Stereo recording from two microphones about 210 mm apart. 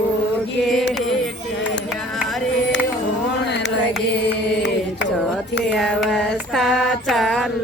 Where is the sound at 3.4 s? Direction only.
55° left (ahead or behind).